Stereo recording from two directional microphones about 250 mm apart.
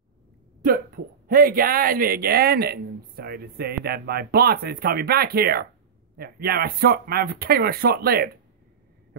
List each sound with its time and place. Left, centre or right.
0.7 s speech: right